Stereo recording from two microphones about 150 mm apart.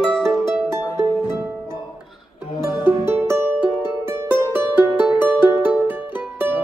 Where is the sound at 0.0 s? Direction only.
Centre (ahead or behind).